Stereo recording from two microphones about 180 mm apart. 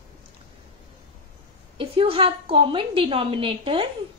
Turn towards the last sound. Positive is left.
turn(degrees=-30)  # may be behind; listen again after turning